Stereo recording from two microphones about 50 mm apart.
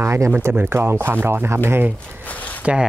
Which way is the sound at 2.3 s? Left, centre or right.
Left.